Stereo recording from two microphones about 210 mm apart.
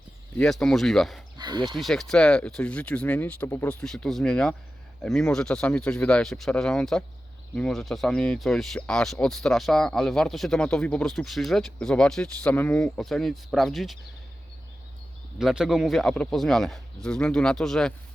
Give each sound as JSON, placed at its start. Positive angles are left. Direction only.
{"t": 0.3, "sound": "speech", "side_deg": 5}
{"t": 1.4, "sound": "a sound", "side_deg": -20}
{"t": 1.6, "sound": "speech", "side_deg": 0}
{"t": 15.4, "sound": "speech", "side_deg": 0}